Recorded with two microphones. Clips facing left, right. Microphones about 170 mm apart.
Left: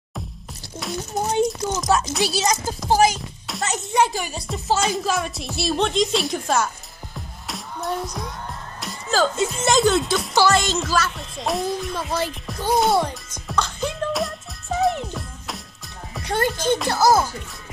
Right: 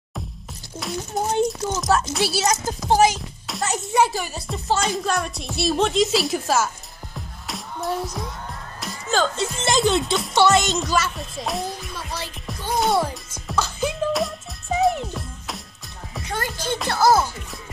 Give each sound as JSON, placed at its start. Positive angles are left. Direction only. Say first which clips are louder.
{"t": 0.7, "sound": "speech", "louder": "even", "side_deg": 0}
{"t": 1.9, "sound": "speech", "louder": "even", "side_deg": -5}
{"t": 2.4, "sound": "speech", "louder": "even", "side_deg": 10}
{"t": 7.2, "sound": "music", "louder": "even", "side_deg": 0}
{"t": 8.8, "sound": "speech", "louder": "left 1 dB", "side_deg": 5}
{"t": 9.8, "sound": "speech", "louder": "left 1 dB", "side_deg": -25}
{"t": 10.5, "sound": "speech", "louder": "right 1 dB", "side_deg": 0}
{"t": 12.4, "sound": "music", "louder": "left 2 dB", "side_deg": 0}
{"t": 16.3, "sound": "speech", "louder": "left 7 dB", "side_deg": 30}
{"t": 16.9, "sound": "speech", "louder": "right 1 dB", "side_deg": 10}